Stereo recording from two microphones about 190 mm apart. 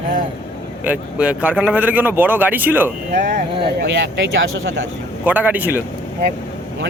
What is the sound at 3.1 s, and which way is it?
Speech, 60° right (ahead or behind).